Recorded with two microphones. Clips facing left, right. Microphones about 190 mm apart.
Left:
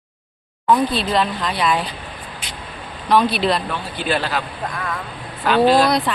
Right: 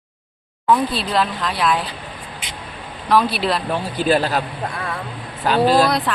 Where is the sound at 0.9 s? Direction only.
Centre (ahead or behind).